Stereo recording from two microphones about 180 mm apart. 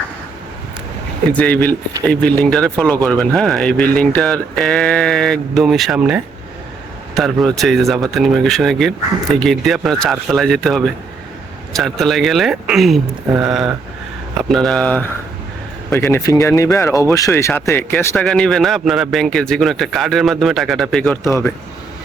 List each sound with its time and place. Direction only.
1.3 s speech: 10° left (ahead or behind)